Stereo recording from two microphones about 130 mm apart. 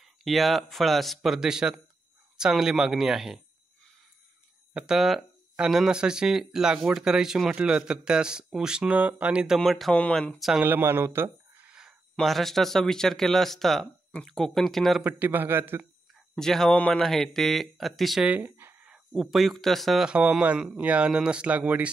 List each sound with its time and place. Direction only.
0.0 s speech: centre (ahead or behind)
4.7 s speech: 5° right (ahead or behind)
10.6 s speech: 15° right (ahead or behind); by 15.0 s centre (ahead or behind)
15.0 s speech: 15° right (ahead or behind)
16.3 s speech: 5° left (ahead or behind); by 18.9 s 15° right (ahead or behind)
19.1 s speech: centre (ahead or behind)